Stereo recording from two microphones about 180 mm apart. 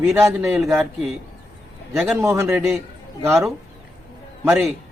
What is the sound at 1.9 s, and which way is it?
A man's voice, 10° right (ahead or behind).